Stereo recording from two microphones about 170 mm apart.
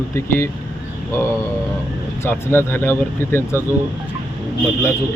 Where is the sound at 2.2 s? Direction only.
15° left (ahead or behind).